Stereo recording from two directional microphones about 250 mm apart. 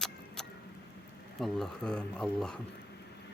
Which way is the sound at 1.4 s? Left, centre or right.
Centre.